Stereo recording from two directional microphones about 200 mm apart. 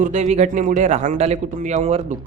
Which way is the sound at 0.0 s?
35° right (ahead or behind).